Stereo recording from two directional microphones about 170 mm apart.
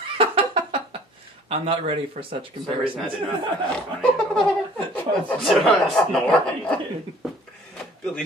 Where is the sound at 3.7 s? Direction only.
5° left (ahead or behind).